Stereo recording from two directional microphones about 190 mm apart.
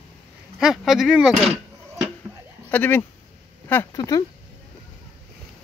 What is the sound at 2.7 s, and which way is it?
Speech, 10° left (ahead or behind).